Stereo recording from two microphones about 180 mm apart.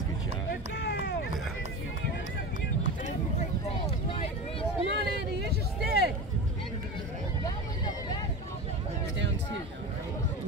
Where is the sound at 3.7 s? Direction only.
30° left (ahead or behind).